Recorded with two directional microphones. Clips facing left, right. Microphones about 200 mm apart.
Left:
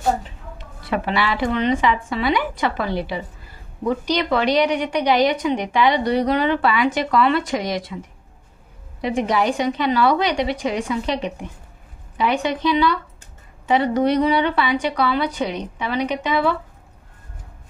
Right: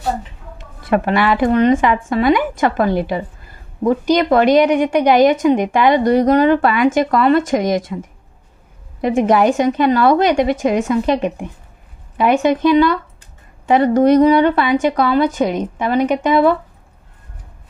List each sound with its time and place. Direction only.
0.8 s a woman's voice: 50° right (ahead or behind)
9.0 s a woman's voice: 50° right (ahead or behind)